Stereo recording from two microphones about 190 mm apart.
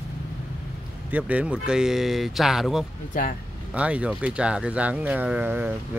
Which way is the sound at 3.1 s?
45° left (ahead or behind).